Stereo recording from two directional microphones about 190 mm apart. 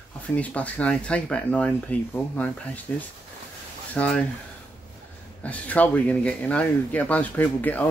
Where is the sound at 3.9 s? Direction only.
5° left (ahead or behind).